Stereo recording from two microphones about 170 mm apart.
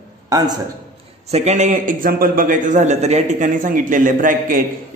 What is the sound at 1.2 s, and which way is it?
A man's voice, 40° right (ahead or behind).